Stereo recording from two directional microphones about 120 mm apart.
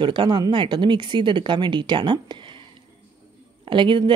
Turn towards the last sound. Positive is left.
turn(degrees=-40)  # may be behind; listen again after turning